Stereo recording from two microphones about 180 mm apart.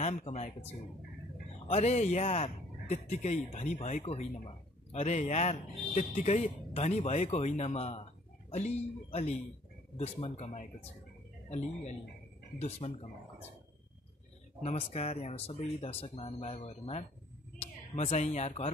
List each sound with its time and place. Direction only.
0.0 s a man's voice: 35° left (ahead or behind)
14.6 s a man's voice: 35° left (ahead or behind)